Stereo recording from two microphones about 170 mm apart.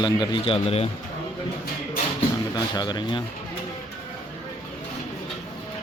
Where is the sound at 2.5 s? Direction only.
25° left (ahead or behind).